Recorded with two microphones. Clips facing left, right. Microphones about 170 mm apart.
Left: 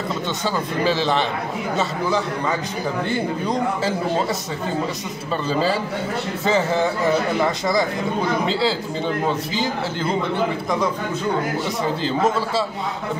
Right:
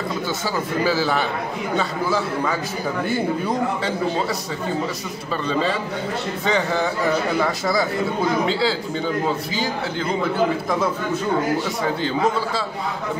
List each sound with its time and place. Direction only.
0.9 s a man's voice: 5° right (ahead or behind)
5.5 s a man's voice: 35° left (ahead or behind)
6.4 s a man's voice: centre (ahead or behind)
8.5 s a man's voice: centre (ahead or behind)
10.3 s a man's voice: 5° right (ahead or behind)